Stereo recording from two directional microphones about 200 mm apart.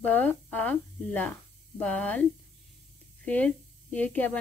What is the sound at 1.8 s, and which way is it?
Speech, 5° left (ahead or behind).